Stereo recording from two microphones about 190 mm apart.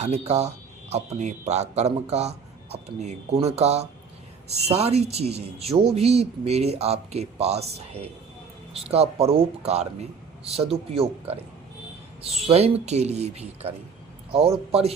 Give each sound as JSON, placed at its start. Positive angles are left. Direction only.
{"t": 0.0, "sound": "speech", "side_deg": -35}
{"t": 12.5, "sound": "speech", "side_deg": -35}